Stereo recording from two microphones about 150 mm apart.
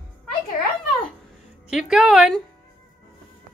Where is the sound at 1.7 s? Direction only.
5° right (ahead or behind).